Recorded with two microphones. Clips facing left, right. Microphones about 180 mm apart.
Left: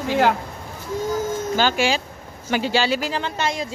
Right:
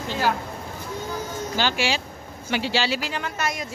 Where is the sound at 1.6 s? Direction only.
45° left (ahead or behind).